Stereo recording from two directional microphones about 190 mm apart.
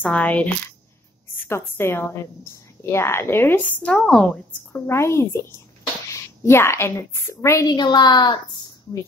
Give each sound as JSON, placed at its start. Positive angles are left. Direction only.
{"t": 0.0, "sound": "a woman's voice", "side_deg": 10}
{"t": 6.4, "sound": "a woman's voice", "side_deg": 15}